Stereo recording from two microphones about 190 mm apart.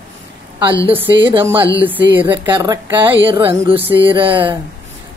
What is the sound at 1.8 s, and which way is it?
Speech, 10° right (ahead or behind).